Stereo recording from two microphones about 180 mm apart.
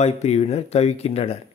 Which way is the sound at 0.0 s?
35° left (ahead or behind).